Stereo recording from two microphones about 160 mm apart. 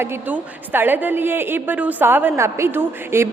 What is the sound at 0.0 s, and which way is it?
A woman's voice, 15° right (ahead or behind).